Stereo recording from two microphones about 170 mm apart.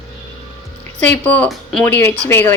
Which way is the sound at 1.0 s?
10° left (ahead or behind).